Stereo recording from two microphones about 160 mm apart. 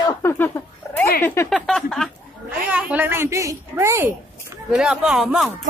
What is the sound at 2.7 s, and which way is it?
A woman's voice, 10° right (ahead or behind).